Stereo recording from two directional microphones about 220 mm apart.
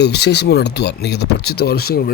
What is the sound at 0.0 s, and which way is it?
Speech, 50° left (ahead or behind).